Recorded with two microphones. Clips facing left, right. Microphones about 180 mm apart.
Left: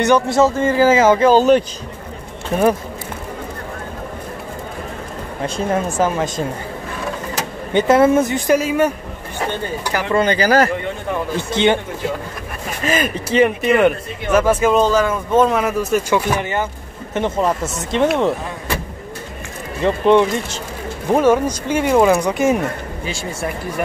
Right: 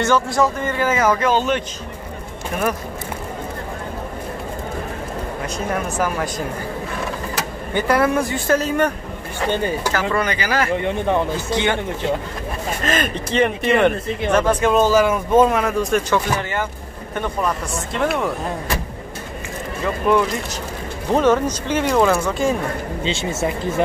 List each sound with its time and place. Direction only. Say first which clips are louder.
0.0 s speech: left 4 dB; 20° left (ahead or behind); by 1.6 s 35° left (ahead or behind)
5.7 s speech: left 4 dB; 25° left (ahead or behind)
7.7 s speech: left 5 dB; 20° left (ahead or behind)
9.9 s speech: left 4 dB; 20° left (ahead or behind); by 10.7 s 40° left (ahead or behind)
10.8 s speech: right 4 dB; 20° right (ahead or behind)
11.5 s speech: left 5 dB; 20° left (ahead or behind)
12.8 s speech: left 4 dB; 10° left (ahead or behind); by 15.5 s 10° right (ahead or behind)
15.5 s speech: left 1 dB; 5° left (ahead or behind)
16.3 s speech: left 3 dB; 20° left (ahead or behind)
19.8 s speech: left 5 dB; 25° left (ahead or behind)
21.1 s speech: left 2 dB; 10° left (ahead or behind)
23.0 s speech: right 3 dB; 20° right (ahead or behind)